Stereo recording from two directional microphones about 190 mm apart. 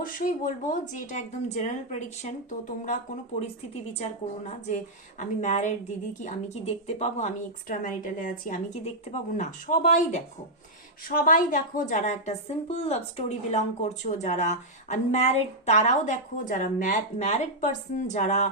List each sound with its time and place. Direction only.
0.0 s a woman's voice: 45° left (ahead or behind)